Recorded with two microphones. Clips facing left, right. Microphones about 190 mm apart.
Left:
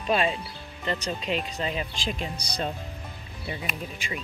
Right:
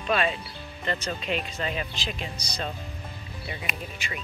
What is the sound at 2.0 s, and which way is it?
Speech, 45° left (ahead or behind).